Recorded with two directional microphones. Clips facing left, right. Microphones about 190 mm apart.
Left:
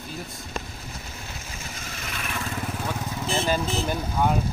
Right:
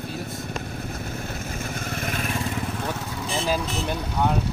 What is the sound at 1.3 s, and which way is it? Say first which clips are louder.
Vehicle: right 8 dB; 50° right (ahead or behind).